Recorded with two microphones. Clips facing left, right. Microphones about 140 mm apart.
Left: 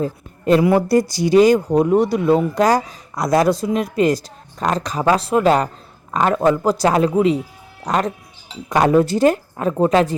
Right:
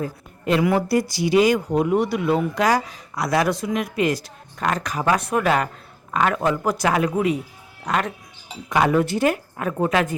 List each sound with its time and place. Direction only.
0.0 s a woman's voice: 35° left (ahead or behind)